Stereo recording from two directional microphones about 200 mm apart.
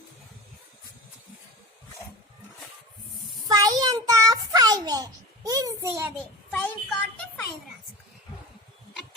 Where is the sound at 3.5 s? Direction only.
20° right (ahead or behind).